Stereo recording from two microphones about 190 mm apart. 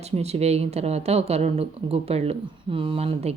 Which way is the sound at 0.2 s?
35° right (ahead or behind).